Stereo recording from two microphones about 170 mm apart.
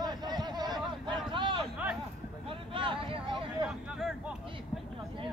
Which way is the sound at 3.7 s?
5° right (ahead or behind).